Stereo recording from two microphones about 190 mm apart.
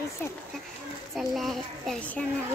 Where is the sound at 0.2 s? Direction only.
10° left (ahead or behind).